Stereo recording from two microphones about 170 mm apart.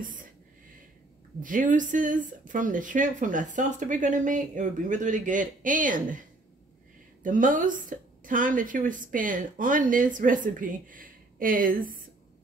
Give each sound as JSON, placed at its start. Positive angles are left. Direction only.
{"t": 0.0, "sound": "a sound", "side_deg": -50}
{"t": 1.4, "sound": "a woman's voice", "side_deg": -50}
{"t": 7.2, "sound": "a woman's voice", "side_deg": -50}